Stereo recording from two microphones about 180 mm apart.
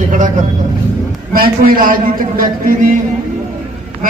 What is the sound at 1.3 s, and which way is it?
A man's voice, 55° right (ahead or behind).